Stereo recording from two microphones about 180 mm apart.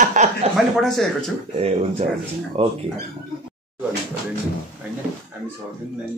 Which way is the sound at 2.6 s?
35° right (ahead or behind).